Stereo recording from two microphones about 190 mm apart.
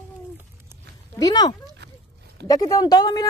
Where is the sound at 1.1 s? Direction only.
20° left (ahead or behind).